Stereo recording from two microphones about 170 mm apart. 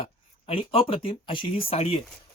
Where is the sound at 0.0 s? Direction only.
35° left (ahead or behind).